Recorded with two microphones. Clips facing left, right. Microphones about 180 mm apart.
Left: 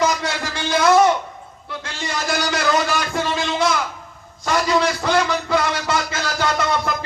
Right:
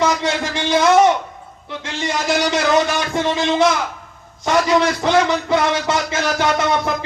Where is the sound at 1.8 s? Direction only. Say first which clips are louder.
Right 5 dB; 20° right (ahead or behind).